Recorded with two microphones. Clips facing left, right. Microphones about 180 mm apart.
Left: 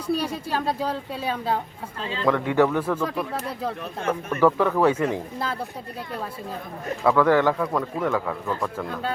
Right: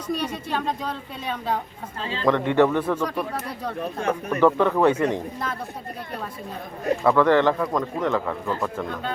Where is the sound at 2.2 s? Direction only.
5° left (ahead or behind).